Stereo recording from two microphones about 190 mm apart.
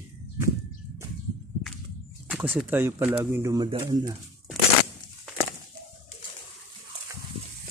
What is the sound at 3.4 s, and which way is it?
Speech, 25° right (ahead or behind).